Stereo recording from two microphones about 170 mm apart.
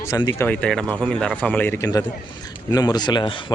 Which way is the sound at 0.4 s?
5° left (ahead or behind).